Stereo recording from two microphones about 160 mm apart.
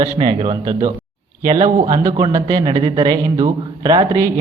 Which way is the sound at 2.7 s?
35° right (ahead or behind).